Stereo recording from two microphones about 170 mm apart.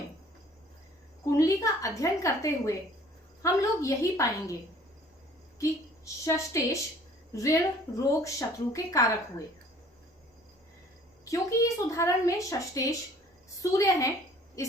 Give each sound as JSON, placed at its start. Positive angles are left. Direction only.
{"t": 1.2, "sound": "a woman's voice", "side_deg": 20}
{"t": 6.2, "sound": "a woman's voice", "side_deg": 15}
{"t": 11.3, "sound": "a woman's voice", "side_deg": 20}